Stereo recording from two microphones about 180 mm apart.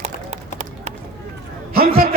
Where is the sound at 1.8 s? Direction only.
55° right (ahead or behind).